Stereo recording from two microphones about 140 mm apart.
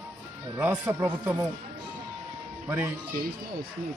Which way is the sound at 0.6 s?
15° right (ahead or behind).